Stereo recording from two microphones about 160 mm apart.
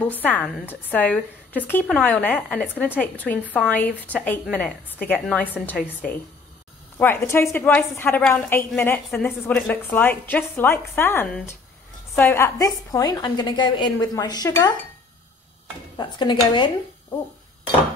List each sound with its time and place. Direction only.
0.0 s a woman's voice: 10° left (ahead or behind)
7.0 s a woman's voice: 15° left (ahead or behind)
16.0 s a woman's voice: 30° left (ahead or behind)